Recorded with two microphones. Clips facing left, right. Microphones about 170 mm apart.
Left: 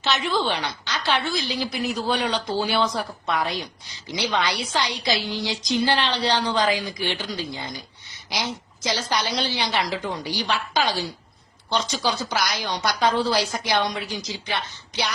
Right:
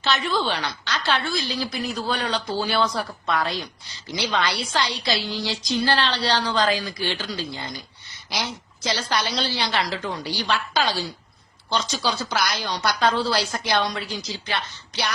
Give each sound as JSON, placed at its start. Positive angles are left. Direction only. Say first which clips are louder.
{"t": 0.0, "sound": "a woman's voice", "louder": "even", "side_deg": 15}
{"t": 8.9, "sound": "a woman's voice", "louder": "even", "side_deg": 15}